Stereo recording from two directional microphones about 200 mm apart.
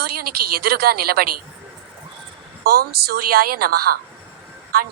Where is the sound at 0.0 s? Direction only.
50° right (ahead or behind).